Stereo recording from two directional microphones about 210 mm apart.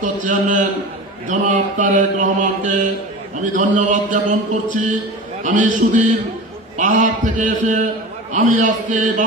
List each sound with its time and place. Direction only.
0.0 s mantra: 35° right (ahead or behind)